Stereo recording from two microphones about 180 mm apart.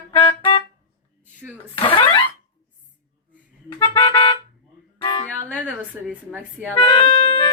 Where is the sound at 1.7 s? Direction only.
30° left (ahead or behind).